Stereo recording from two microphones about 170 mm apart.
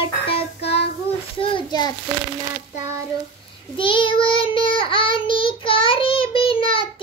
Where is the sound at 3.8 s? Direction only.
30° left (ahead or behind).